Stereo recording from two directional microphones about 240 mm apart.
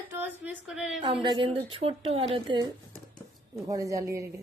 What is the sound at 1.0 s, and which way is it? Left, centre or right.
A woman's voice, centre.